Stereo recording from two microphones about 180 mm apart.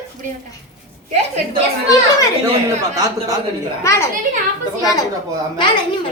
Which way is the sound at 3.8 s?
15° left (ahead or behind).